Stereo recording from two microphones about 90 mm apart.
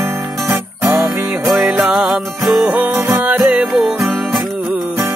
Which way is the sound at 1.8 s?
5° right (ahead or behind).